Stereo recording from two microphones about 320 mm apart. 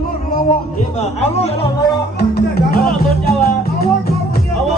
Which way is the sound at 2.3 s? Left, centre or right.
Left.